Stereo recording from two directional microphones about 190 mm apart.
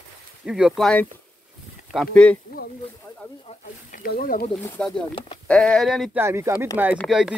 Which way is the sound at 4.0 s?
50° left (ahead or behind).